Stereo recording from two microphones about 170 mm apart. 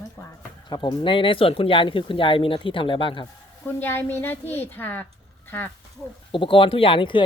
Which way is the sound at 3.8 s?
10° left (ahead or behind).